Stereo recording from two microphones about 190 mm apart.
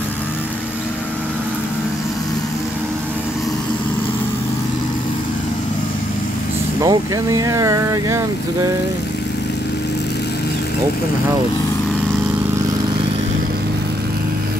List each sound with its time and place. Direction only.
6.8 s speech: 20° right (ahead or behind)